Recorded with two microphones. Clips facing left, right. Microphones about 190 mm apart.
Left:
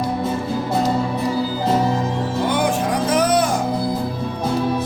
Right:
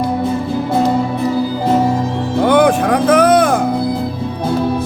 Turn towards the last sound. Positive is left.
turn(degrees=-60)  # may be behind; listen again after turning